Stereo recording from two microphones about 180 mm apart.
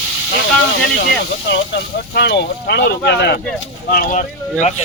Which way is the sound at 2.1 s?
65° left (ahead or behind).